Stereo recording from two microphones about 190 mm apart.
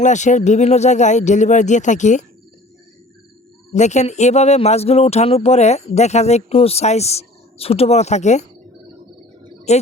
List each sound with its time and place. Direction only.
0.0 s speech: 40° left (ahead or behind)
3.7 s speech: 35° left (ahead or behind)
9.7 s speech: 35° left (ahead or behind)